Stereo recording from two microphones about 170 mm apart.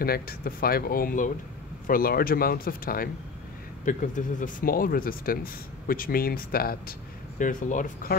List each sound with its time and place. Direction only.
0.0 s speech: 60° left (ahead or behind)